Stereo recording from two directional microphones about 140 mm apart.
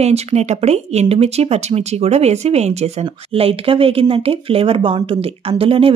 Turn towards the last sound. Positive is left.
turn(degrees=-40)  # may be behind; listen again after turning